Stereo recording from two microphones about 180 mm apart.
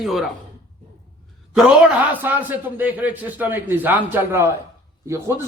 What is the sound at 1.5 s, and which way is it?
A man's voice, 5° right (ahead or behind).